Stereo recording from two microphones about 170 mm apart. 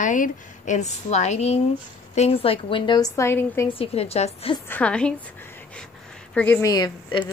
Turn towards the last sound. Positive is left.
turn(degrees=25)  # may be behind; listen again after turning